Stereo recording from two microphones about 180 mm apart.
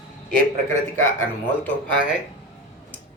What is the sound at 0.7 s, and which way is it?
Speech, 15° left (ahead or behind).